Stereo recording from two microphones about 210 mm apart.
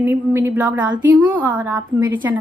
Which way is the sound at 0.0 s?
10° right (ahead or behind).